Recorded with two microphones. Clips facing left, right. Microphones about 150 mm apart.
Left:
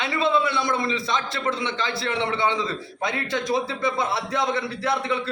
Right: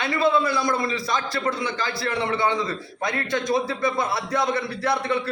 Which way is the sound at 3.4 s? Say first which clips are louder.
Right 1 dB; 25° left (ahead or behind).